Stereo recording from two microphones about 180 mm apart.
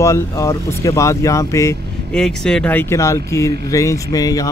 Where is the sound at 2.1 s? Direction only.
5° left (ahead or behind).